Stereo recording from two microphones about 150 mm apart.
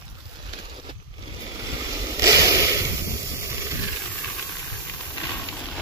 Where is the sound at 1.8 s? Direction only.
25° right (ahead or behind).